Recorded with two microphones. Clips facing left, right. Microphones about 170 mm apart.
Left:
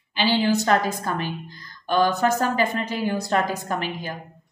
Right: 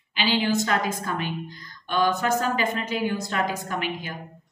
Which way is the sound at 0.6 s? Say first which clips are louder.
Left 4 dB; 40° left (ahead or behind).